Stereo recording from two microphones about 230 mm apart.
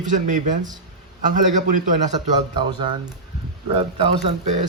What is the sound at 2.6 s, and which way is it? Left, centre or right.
Speech, right.